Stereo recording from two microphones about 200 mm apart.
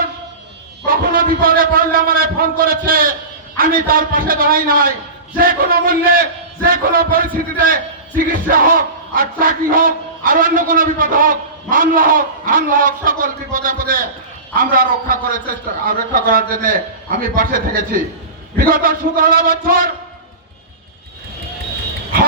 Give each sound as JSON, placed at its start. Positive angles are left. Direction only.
{"t": 0.9, "sound": "a man's voice", "side_deg": -45}